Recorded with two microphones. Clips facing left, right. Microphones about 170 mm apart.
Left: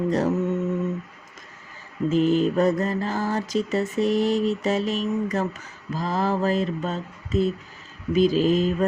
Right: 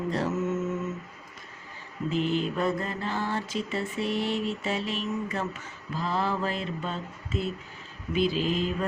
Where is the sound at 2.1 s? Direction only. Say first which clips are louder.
Left 8 dB; 45° left (ahead or behind).